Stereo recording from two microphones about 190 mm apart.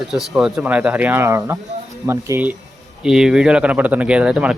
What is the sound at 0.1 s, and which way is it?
Speech, centre (ahead or behind).